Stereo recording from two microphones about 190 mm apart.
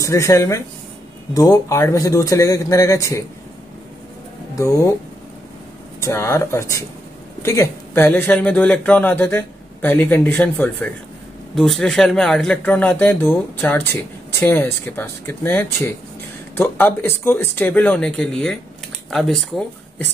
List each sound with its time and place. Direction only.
0.0 s speech: 15° left (ahead or behind)
4.6 s speech: 15° left (ahead or behind)
5.9 s speech: 15° left (ahead or behind)